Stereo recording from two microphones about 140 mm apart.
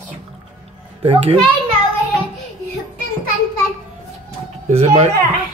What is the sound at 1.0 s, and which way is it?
Speech, 45° right (ahead or behind).